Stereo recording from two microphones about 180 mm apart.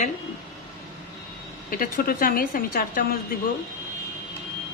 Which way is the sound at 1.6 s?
50° left (ahead or behind).